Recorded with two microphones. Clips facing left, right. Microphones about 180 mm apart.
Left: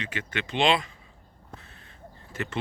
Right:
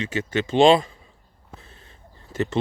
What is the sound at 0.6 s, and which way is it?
Speech, 45° right (ahead or behind).